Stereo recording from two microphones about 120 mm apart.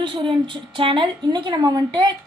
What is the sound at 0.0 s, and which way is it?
A woman's voice, 45° right (ahead or behind).